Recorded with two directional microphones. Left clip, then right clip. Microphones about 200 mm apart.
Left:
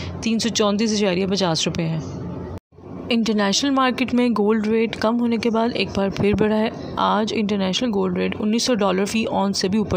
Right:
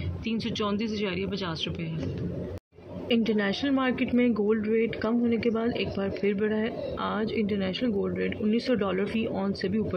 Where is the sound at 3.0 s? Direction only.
55° left (ahead or behind).